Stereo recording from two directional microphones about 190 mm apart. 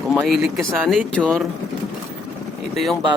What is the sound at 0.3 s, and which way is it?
Speech, centre (ahead or behind).